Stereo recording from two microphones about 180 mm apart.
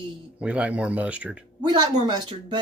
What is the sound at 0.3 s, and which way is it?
Speech, 5° right (ahead or behind).